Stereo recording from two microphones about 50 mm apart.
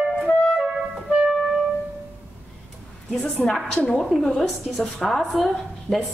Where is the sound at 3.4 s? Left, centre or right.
Centre.